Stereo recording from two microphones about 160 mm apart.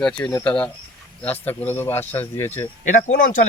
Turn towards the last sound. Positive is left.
turn(degrees=55)  # may be behind; listen again after turning